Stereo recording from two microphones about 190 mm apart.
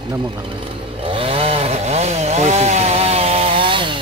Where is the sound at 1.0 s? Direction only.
30° right (ahead or behind).